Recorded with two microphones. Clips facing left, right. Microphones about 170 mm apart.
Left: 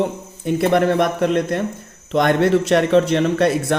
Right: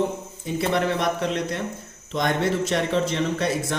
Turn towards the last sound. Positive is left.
turn(degrees=65)  # may be behind; listen again after turning